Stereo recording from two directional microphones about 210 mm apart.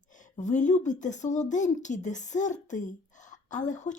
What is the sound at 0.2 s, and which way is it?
A woman's voice, 35° left (ahead or behind).